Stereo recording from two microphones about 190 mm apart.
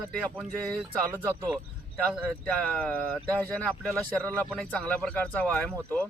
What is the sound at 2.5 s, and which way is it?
A man's voice, 5° left (ahead or behind).